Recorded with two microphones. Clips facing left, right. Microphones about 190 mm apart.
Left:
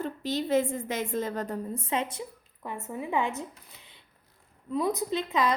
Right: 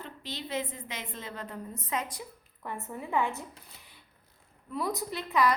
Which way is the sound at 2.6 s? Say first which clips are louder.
Left 3 dB; 15° left (ahead or behind).